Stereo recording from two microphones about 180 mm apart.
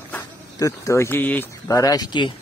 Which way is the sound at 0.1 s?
20° left (ahead or behind).